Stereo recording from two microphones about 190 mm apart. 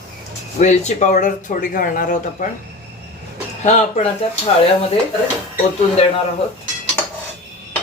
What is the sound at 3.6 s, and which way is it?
Speech, 35° left (ahead or behind).